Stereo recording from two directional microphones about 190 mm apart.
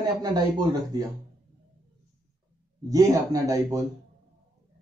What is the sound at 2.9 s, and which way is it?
Speech, 20° right (ahead or behind).